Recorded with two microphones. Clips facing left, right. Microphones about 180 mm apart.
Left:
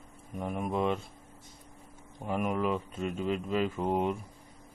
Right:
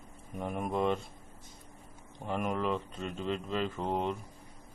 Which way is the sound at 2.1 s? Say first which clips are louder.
Left 2 dB; 5° left (ahead or behind).